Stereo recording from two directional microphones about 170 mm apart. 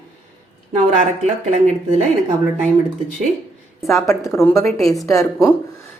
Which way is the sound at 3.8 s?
Centre (ahead or behind).